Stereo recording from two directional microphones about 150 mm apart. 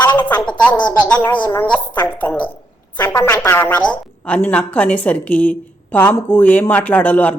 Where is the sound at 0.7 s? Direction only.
30° left (ahead or behind).